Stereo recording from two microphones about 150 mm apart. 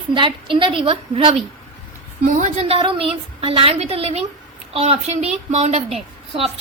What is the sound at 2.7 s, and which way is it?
A woman's voice, 35° right (ahead or behind).